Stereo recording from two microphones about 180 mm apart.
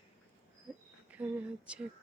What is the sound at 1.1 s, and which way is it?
Speech, 10° right (ahead or behind).